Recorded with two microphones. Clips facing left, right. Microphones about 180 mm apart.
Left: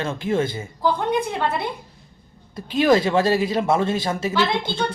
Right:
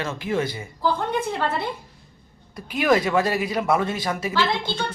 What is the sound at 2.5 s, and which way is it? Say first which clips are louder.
A man's voice: left 3 dB; 25° left (ahead or behind).